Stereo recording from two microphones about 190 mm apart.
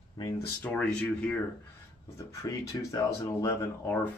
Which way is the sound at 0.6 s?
10° left (ahead or behind).